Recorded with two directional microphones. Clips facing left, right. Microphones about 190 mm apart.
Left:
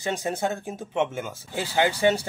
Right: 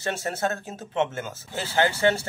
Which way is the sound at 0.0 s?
15° left (ahead or behind).